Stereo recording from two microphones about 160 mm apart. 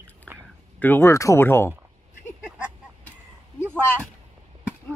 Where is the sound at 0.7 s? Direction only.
10° left (ahead or behind).